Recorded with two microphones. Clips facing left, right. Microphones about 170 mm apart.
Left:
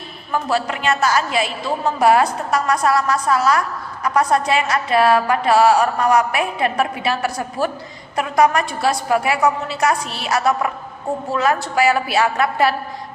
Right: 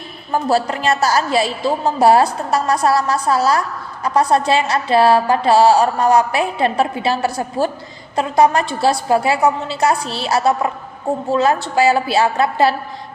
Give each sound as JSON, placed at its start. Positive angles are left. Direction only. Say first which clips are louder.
{"t": 0.3, "sound": "a woman's voice", "louder": "right 4 dB", "side_deg": -35}